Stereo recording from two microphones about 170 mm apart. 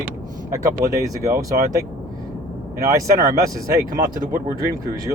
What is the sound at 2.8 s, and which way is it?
Speech, 20° right (ahead or behind).